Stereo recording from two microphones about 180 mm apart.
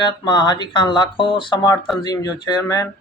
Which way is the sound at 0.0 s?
25° left (ahead or behind).